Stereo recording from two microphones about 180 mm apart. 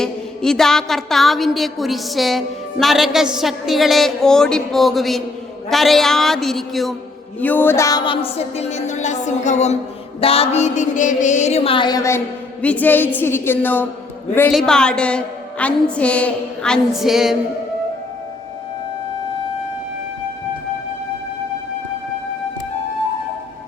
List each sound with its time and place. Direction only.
0.0 s a woman's voice: centre (ahead or behind)
7.3 s a sound: 10° left (ahead or behind)
12.6 s a woman's voice: 10° left (ahead or behind)